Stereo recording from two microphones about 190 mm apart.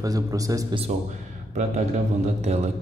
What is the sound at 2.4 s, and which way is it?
Speech, 35° right (ahead or behind).